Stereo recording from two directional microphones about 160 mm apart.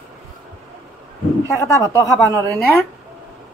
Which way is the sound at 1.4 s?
20° left (ahead or behind).